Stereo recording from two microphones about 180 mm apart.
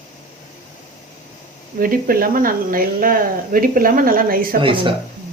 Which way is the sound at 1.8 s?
50° right (ahead or behind).